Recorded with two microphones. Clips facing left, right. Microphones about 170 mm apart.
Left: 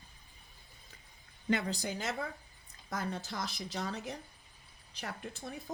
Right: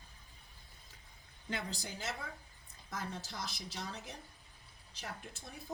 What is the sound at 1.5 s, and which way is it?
Speech, 80° left.